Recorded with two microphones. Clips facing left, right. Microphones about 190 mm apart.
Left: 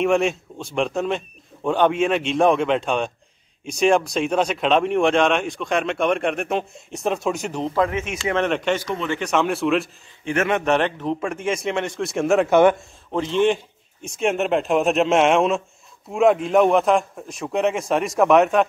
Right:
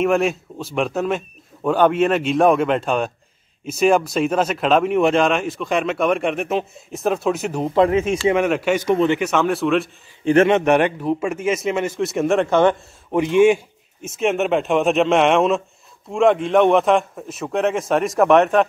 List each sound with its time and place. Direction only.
0.0 s speech: centre (ahead or behind)
7.7 s speech: 30° right (ahead or behind)
8.3 s speech: 10° right (ahead or behind)
10.2 s speech: 30° right (ahead or behind)
10.6 s speech: 10° right (ahead or behind); by 12.7 s 10° left (ahead or behind)
13.1 s speech: 15° right (ahead or behind)